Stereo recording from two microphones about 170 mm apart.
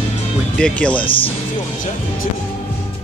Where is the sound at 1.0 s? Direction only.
30° left (ahead or behind).